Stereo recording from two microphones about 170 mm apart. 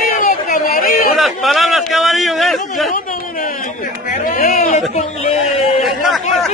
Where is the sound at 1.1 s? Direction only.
Centre (ahead or behind).